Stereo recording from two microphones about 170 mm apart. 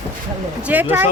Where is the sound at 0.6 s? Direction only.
10° right (ahead or behind).